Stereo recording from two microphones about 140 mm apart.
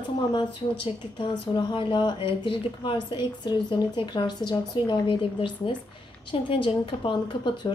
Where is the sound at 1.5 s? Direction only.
35° left (ahead or behind).